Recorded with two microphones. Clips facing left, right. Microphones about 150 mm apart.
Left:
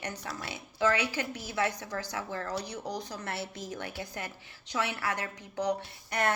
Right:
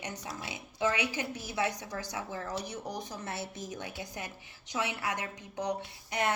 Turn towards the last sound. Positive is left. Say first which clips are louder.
# left 1 dB
turn(degrees=-20)  # may be behind; listen again after turning